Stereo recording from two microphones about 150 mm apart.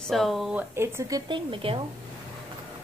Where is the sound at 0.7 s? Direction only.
15° right (ahead or behind).